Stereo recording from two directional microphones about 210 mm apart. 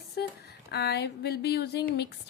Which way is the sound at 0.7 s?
50° left (ahead or behind).